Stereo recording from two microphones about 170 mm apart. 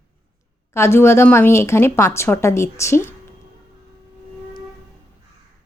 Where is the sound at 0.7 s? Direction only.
15° left (ahead or behind).